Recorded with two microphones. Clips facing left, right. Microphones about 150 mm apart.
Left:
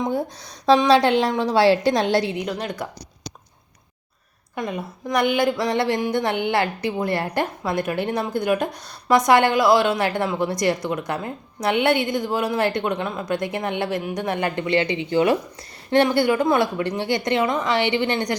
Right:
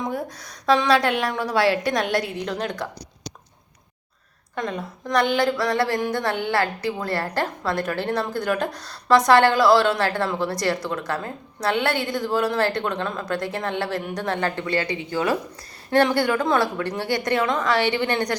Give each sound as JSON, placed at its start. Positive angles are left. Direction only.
{"t": 0.0, "sound": "a woman's voice", "side_deg": 25}
{"t": 2.4, "sound": "a woman's voice", "side_deg": 5}
{"t": 4.5, "sound": "speech", "side_deg": 10}